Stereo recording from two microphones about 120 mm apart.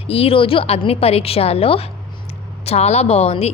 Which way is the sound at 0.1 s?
55° left (ahead or behind).